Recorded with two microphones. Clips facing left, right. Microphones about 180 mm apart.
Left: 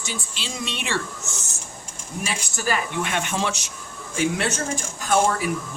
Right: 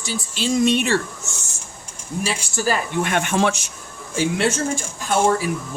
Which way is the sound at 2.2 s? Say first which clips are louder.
Right 5 dB; 35° right (ahead or behind).